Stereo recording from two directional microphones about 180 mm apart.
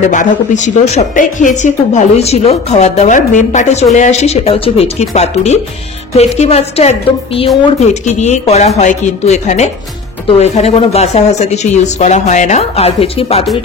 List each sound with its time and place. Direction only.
0.0 s a woman's voice: 45° left (ahead or behind)